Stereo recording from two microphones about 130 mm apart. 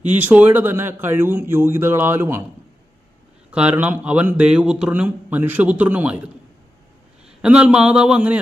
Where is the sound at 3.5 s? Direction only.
10° right (ahead or behind).